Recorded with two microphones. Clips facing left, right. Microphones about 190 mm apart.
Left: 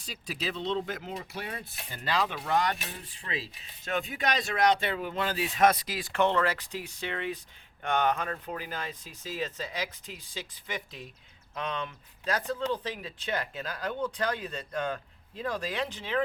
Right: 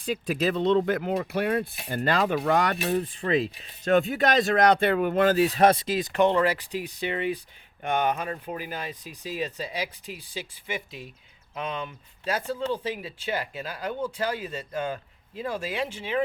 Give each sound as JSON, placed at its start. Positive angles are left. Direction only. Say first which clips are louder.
{"t": 0.0, "sound": "speech", "louder": "right 11 dB", "side_deg": -55}